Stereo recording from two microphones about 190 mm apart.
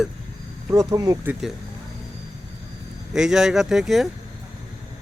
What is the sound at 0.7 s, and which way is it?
Speech, 15° right (ahead or behind).